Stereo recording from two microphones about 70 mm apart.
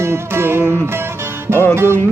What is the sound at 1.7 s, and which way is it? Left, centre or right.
Music, right.